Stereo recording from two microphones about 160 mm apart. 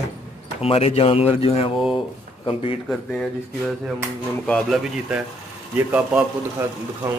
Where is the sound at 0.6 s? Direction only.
40° left (ahead or behind).